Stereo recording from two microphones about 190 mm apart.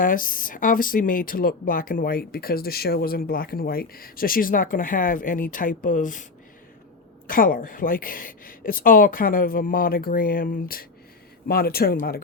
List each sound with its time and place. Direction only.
0.0 s speech: 45° left (ahead or behind)
7.3 s speech: 50° left (ahead or behind)